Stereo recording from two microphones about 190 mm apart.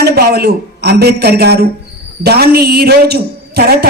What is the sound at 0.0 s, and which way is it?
A woman's voice, 55° right (ahead or behind).